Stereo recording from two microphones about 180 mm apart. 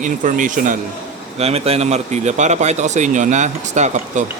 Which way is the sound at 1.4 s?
35° right (ahead or behind).